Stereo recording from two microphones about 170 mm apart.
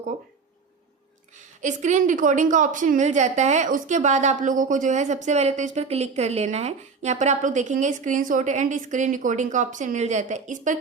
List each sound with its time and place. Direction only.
1.6 s a woman's voice: 45° right (ahead or behind)